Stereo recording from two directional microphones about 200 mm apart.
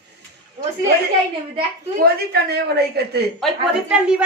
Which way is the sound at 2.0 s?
50° right (ahead or behind).